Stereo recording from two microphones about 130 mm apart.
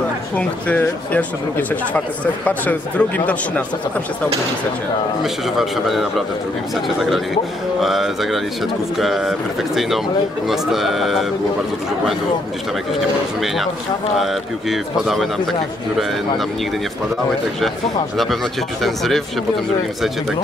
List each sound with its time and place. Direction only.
0.4 s speech: 10° left (ahead or behind)
5.2 s speech: centre (ahead or behind)
7.8 s speech: centre (ahead or behind)
14.2 s speech: centre (ahead or behind)
18.1 s speech: centre (ahead or behind)